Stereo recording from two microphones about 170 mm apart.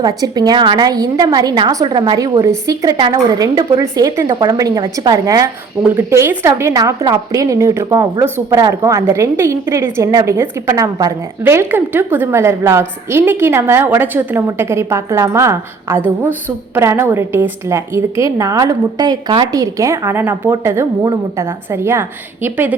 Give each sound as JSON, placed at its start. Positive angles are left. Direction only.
{"t": 0.0, "sound": "a woman's voice", "side_deg": -20}